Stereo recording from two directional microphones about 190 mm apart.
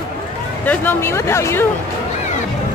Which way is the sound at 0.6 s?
10° left (ahead or behind).